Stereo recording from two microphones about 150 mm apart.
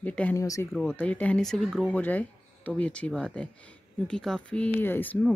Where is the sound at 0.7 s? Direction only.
10° left (ahead or behind).